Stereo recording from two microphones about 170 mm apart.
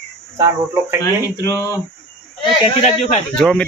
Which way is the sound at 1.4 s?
20° left (ahead or behind).